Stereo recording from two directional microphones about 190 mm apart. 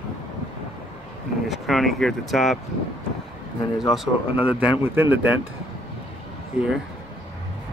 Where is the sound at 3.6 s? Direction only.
20° left (ahead or behind).